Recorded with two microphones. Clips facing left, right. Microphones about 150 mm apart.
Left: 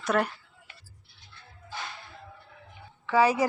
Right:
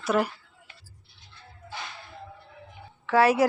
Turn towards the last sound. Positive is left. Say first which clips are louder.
# right 2 dB
turn(degrees=-5)  # may be behind; listen again after turning